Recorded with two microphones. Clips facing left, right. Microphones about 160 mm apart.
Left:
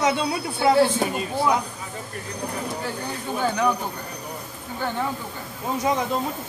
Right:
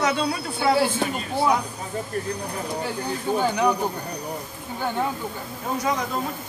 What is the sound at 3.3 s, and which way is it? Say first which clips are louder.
Speech: right 1 dB; 15° right (ahead or behind).